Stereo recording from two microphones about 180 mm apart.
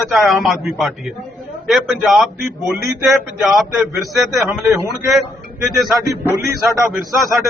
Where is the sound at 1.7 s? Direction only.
Centre (ahead or behind).